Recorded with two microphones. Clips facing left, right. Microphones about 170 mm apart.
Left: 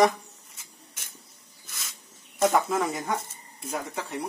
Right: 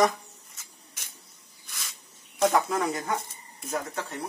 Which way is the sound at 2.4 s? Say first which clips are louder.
Left 1 dB; centre (ahead or behind).